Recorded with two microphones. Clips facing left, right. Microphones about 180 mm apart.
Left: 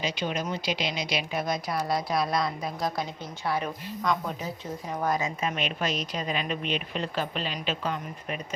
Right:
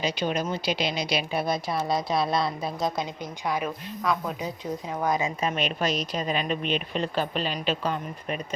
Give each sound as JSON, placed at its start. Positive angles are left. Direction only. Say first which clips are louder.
{"t": 0.0, "sound": "a woman's voice", "louder": "right 3 dB", "side_deg": -35}
{"t": 5.2, "sound": "a woman's voice", "louder": "right 3 dB", "side_deg": -35}